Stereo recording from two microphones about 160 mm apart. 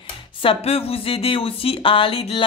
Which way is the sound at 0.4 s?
35° left (ahead or behind).